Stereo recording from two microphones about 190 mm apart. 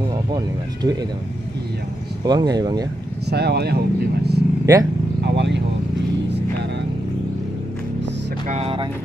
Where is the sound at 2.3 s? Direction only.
20° right (ahead or behind).